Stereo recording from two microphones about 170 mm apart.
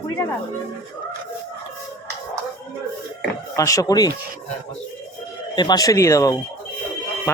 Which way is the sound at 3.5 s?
20° left (ahead or behind).